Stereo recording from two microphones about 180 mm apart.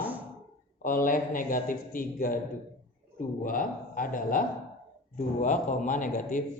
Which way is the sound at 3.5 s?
50° left (ahead or behind).